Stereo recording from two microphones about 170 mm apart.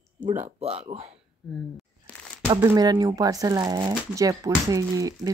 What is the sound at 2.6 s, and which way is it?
Speech, 20° right (ahead or behind).